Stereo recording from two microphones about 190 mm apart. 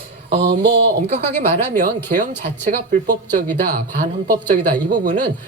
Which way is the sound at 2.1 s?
40° right (ahead or behind).